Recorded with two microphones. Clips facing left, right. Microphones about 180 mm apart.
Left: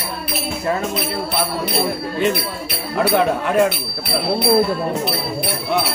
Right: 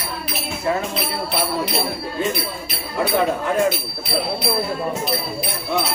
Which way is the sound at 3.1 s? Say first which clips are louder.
Left 2 dB; 65° left (ahead or behind).